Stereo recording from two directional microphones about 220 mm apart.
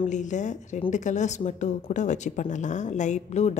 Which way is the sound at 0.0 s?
35° left (ahead or behind).